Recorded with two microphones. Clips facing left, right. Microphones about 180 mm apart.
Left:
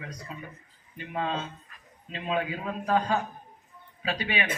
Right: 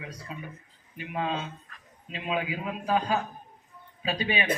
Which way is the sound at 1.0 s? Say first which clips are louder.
Even; 5° right (ahead or behind).